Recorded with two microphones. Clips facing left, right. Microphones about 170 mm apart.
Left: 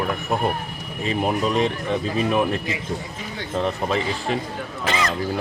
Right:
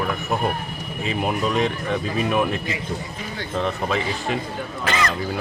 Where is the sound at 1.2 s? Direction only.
Centre (ahead or behind).